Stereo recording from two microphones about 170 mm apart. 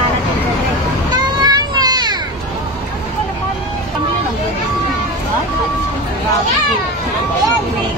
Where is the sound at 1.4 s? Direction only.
25° right (ahead or behind).